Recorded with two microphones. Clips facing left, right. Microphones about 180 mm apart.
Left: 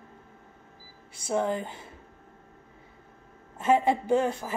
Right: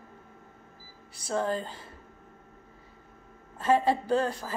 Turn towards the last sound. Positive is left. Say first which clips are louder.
# left 2 dB
turn(degrees=20)  # may be behind; listen again after turning